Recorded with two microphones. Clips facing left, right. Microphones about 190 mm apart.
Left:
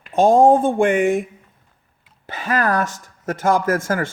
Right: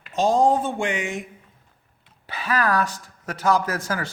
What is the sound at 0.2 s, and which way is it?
Speech, 55° left (ahead or behind).